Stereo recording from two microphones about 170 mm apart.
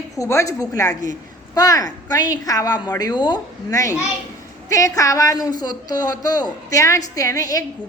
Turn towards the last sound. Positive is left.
turn(degrees=20)  # may be behind; listen again after turning